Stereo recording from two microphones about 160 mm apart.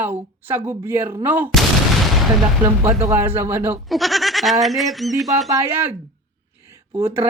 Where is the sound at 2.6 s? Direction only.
15° right (ahead or behind).